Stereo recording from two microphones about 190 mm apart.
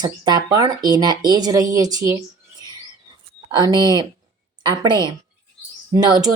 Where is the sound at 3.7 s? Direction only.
15° left (ahead or behind).